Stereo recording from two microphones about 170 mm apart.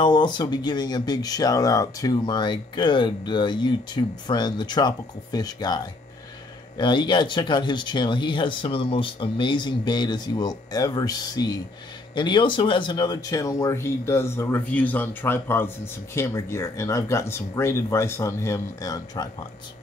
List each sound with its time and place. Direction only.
0.0 s speech: 25° left (ahead or behind)
6.8 s speech: 25° left (ahead or behind)